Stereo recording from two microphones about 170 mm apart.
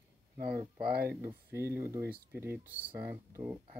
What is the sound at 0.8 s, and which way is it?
Speech, 65° right (ahead or behind).